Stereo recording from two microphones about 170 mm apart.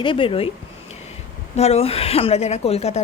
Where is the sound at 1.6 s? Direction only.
40° left (ahead or behind).